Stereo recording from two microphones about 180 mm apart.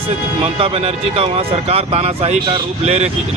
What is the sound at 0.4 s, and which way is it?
Speech, 30° right (ahead or behind).